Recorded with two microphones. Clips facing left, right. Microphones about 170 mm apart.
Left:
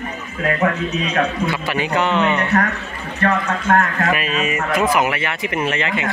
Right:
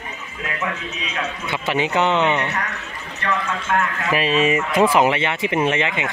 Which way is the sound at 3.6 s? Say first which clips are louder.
Left 7 dB; 50° left (ahead or behind).